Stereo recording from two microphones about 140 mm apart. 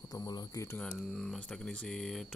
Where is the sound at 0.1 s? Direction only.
25° left (ahead or behind).